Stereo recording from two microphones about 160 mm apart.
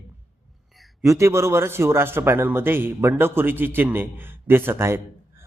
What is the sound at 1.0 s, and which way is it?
A man's voice, 20° right (ahead or behind).